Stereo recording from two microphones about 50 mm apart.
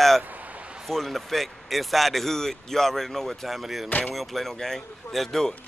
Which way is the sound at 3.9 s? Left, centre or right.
Left.